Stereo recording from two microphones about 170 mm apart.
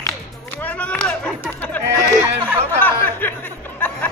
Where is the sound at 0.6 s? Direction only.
10° left (ahead or behind).